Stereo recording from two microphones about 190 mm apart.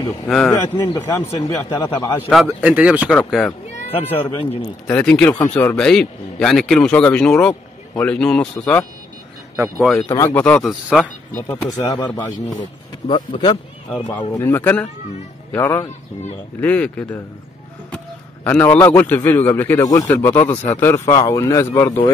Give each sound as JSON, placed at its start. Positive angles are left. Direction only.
{"t": 0.5, "sound": "a man's voice", "side_deg": 20}
{"t": 2.2, "sound": "speech", "side_deg": 0}
{"t": 3.1, "sound": "a man's voice", "side_deg": 5}
{"t": 4.3, "sound": "a man's voice", "side_deg": 25}
{"t": 4.8, "sound": "a man's voice", "side_deg": 5}
{"t": 10.0, "sound": "a man's voice", "side_deg": 20}
{"t": 10.3, "sound": "a man's voice", "side_deg": 5}
{"t": 11.9, "sound": "a man's voice", "side_deg": 20}